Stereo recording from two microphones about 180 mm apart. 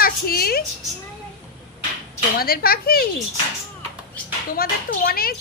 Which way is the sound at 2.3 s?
55° left (ahead or behind).